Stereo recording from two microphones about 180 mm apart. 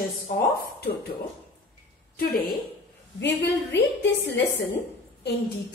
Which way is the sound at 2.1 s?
55° left (ahead or behind).